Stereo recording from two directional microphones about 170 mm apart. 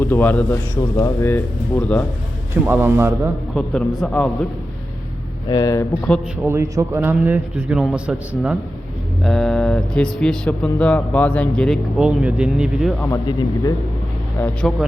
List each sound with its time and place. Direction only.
0.0 s a man's voice: 10° left (ahead or behind)
2.6 s a man's voice: 15° right (ahead or behind)
3.5 s speech: 5° left (ahead or behind)
5.5 s speech: 20° left (ahead or behind)
6.4 s a man's voice: 15° right (ahead or behind)
14.3 s a man's voice: 10° left (ahead or behind)